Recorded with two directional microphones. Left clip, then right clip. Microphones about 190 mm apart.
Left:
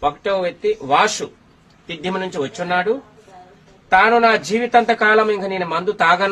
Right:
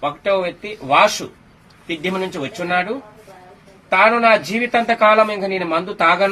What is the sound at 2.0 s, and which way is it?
Speech, 20° left (ahead or behind).